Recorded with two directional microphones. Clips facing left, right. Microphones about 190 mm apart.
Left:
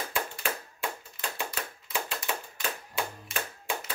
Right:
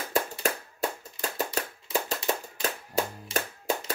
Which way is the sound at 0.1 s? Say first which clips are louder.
Right 5 dB; 40° right (ahead or behind).